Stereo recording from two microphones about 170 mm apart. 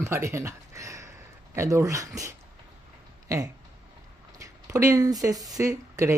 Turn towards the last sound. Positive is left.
turn(degrees=-20)  # may be behind; listen again after turning